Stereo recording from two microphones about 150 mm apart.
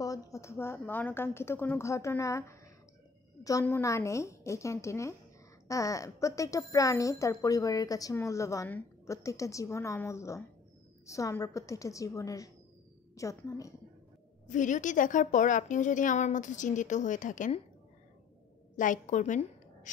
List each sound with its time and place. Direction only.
0.0 s a woman's voice: 20° left (ahead or behind)
14.5 s a woman's voice: 55° left (ahead or behind)
18.8 s a woman's voice: 60° left (ahead or behind)